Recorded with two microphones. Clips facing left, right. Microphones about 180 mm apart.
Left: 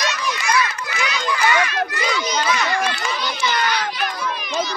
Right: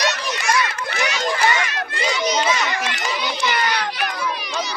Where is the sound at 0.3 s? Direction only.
50° right (ahead or behind).